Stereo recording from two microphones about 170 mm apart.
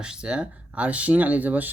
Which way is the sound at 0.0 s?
5° right (ahead or behind).